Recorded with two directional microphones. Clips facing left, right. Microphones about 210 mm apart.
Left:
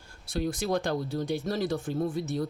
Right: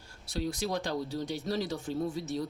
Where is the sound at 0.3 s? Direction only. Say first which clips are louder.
Left 4 dB; 50° left (ahead or behind).